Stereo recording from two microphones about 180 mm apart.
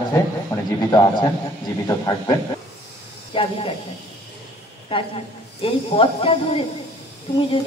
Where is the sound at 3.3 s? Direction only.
30° left (ahead or behind).